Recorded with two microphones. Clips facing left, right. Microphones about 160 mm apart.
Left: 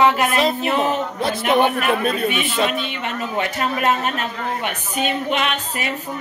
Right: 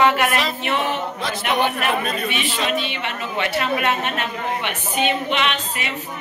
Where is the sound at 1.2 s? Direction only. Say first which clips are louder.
Left 5 dB; 55° left (ahead or behind).